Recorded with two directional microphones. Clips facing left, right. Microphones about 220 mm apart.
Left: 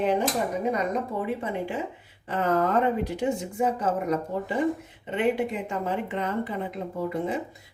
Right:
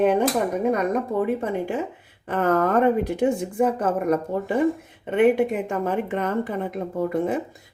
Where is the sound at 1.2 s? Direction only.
45° right (ahead or behind).